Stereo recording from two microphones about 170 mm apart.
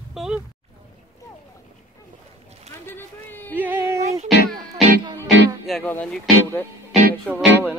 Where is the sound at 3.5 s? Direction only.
10° right (ahead or behind).